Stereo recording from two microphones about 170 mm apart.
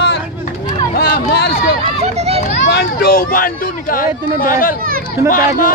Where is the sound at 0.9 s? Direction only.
65° left (ahead or behind).